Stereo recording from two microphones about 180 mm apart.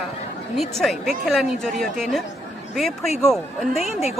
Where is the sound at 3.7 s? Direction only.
35° left (ahead or behind).